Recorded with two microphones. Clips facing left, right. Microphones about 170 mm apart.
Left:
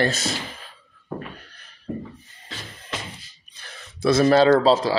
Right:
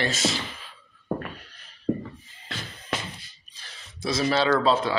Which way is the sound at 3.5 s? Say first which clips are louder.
Left 5 dB; 60° left (ahead or behind).